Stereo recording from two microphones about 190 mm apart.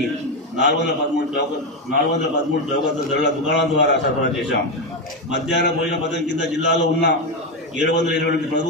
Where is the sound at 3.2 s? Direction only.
70° left (ahead or behind).